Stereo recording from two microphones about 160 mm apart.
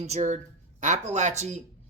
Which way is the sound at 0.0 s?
45° right (ahead or behind).